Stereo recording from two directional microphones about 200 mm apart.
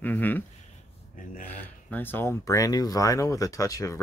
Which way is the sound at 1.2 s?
40° left (ahead or behind).